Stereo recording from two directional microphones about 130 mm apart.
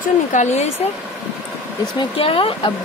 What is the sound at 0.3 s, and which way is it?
Speech, 65° left (ahead or behind).